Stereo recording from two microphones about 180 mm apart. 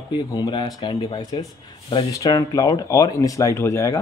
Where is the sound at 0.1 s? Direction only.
25° left (ahead or behind).